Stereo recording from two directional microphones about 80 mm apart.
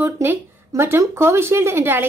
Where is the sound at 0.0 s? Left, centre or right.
Right.